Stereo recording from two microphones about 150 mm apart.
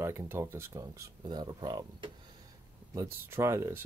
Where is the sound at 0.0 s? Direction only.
15° right (ahead or behind).